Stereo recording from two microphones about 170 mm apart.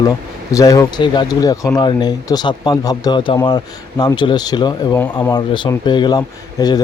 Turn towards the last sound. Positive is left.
turn(degrees=25)  # may be behind; listen again after turning